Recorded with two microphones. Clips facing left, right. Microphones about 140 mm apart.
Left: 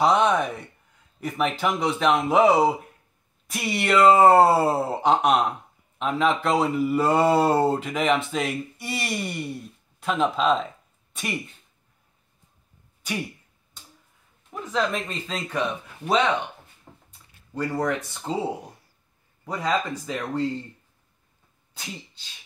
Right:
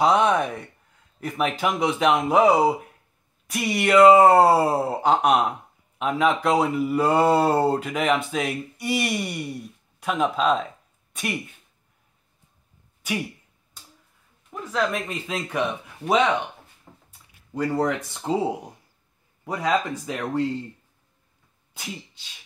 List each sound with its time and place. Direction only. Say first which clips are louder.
0.0 s speech: right 1 dB; 5° right (ahead or behind)
14.6 s speech: even; 5° right (ahead or behind)
16.9 s a sound: left 2 dB; 10° left (ahead or behind)
17.6 s speech: right 2 dB; 20° right (ahead or behind)